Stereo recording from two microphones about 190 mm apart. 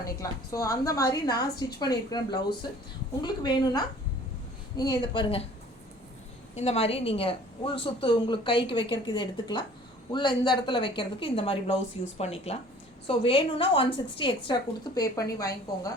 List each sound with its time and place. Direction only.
0.0 s a woman's voice: 20° left (ahead or behind)
6.6 s a woman's voice: 30° left (ahead or behind); by 15.9 s 15° left (ahead or behind)